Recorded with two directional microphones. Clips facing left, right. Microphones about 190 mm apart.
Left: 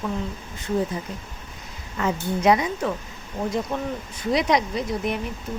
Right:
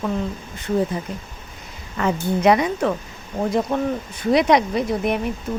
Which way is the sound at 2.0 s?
65° right (ahead or behind).